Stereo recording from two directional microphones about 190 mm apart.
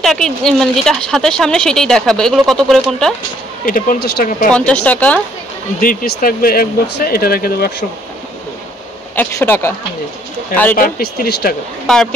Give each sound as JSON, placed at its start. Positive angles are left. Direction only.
{"t": 0.0, "sound": "speech", "side_deg": 0}
{"t": 3.6, "sound": "speech", "side_deg": 45}
{"t": 4.5, "sound": "speech", "side_deg": 5}
{"t": 5.8, "sound": "speech", "side_deg": 50}
{"t": 9.1, "sound": "speech", "side_deg": 10}
{"t": 10.8, "sound": "speech", "side_deg": 55}
{"t": 11.9, "sound": "speech", "side_deg": 0}